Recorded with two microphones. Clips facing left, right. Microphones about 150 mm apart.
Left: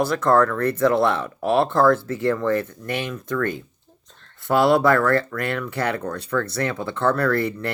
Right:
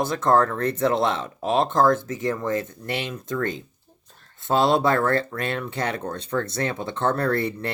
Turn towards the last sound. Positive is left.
turn(degrees=-25)  # may be behind; listen again after turning